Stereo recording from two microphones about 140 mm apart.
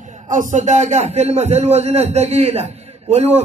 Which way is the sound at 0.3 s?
65° right (ahead or behind).